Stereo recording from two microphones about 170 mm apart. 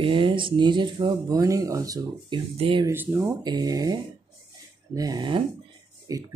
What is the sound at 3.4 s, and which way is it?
Speech, 25° right (ahead or behind).